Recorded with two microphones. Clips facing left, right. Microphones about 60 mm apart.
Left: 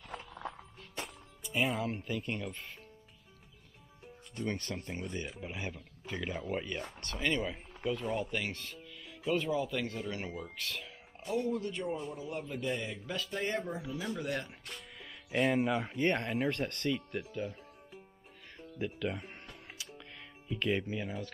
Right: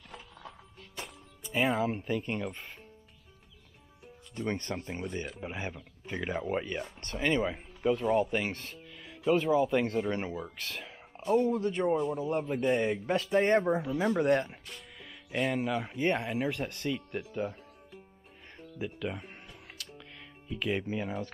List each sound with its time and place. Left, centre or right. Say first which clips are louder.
0.1 s music: left 5 dB; left
1.5 s speech: right 4 dB; centre
4.4 s speech: right 3 dB; right
14.7 s speech: even; centre
18.8 s speech: even; centre
19.8 s music: right 1 dB; centre
20.8 s speech: right 4 dB; right